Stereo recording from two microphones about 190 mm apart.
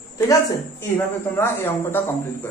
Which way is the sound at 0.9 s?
10° left (ahead or behind).